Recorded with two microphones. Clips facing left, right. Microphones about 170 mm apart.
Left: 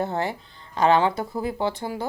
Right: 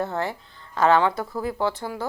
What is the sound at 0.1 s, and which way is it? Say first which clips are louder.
A woman's voice: left 1 dB; 20° left (ahead or behind).